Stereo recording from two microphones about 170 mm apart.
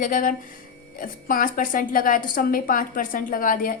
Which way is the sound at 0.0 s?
50° left (ahead or behind).